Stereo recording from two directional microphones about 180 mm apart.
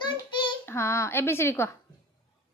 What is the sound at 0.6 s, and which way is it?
Speech, 15° left (ahead or behind).